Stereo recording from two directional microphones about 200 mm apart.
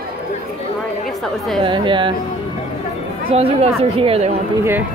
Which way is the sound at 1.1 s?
Centre (ahead or behind).